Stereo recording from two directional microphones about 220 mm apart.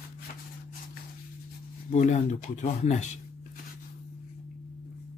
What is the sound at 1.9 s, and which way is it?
Speech, 30° left (ahead or behind).